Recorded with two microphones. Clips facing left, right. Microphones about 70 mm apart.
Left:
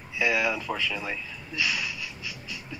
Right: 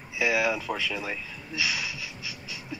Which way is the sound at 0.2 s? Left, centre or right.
Centre.